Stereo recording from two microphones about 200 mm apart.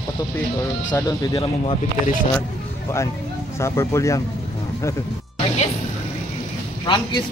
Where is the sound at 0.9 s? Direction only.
20° left (ahead or behind).